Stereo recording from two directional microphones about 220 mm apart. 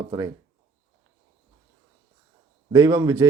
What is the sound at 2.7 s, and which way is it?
Speech, 15° right (ahead or behind).